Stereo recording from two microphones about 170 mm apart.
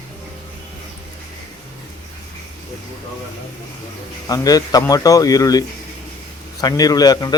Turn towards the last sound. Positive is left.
turn(degrees=25)  # may be behind; listen again after turning